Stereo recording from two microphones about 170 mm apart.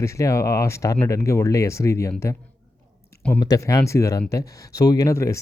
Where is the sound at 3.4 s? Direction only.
20° left (ahead or behind).